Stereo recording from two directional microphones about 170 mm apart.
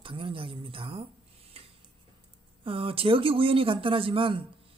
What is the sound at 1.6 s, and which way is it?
Tick-tock, 35° right (ahead or behind).